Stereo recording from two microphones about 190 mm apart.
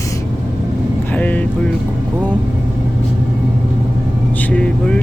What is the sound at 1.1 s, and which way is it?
Speech, 10° left (ahead or behind).